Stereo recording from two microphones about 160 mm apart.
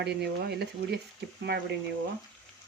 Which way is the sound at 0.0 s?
90° right.